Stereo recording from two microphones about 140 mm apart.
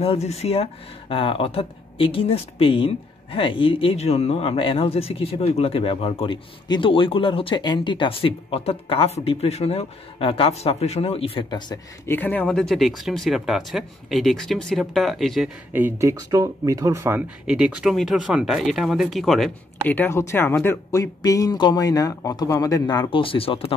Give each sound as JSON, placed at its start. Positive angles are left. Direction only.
{"t": 0.0, "sound": "speech", "side_deg": 45}
{"t": 12.1, "sound": "speech", "side_deg": 10}
{"t": 15.7, "sound": "speech", "side_deg": -15}
{"t": 17.5, "sound": "speech", "side_deg": -5}
{"t": 19.9, "sound": "speech", "side_deg": 15}